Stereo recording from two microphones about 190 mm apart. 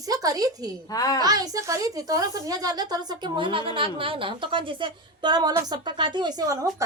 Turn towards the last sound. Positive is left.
turn(degrees=-15)  # may be behind; listen again after turning